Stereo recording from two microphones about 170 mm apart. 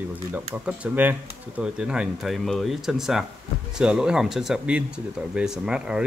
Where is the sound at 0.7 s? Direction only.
10° right (ahead or behind).